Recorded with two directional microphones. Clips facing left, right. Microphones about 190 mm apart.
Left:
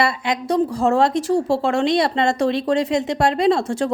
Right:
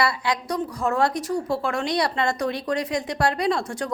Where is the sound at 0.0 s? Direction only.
25° left (ahead or behind).